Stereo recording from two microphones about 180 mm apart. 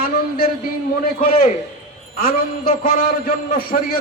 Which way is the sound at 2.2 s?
55° left (ahead or behind).